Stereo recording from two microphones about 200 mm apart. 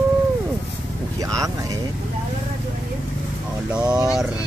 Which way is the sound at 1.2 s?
15° right (ahead or behind).